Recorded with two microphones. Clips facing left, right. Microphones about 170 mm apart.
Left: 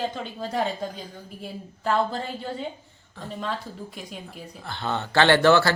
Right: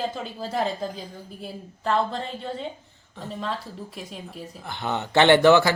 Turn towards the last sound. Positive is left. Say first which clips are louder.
# right 2 dB
turn(degrees=-15)  # may be behind; listen again after turning